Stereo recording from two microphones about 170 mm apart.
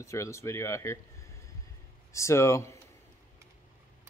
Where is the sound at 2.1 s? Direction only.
15° left (ahead or behind).